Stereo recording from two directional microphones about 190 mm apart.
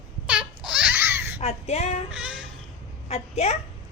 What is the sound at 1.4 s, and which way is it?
Speech, 35° left (ahead or behind).